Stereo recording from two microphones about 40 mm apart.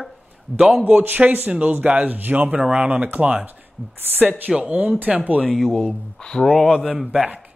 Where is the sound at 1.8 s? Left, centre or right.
Right.